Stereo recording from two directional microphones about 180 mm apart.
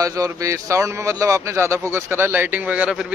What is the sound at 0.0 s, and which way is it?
A man's voice, 20° right (ahead or behind).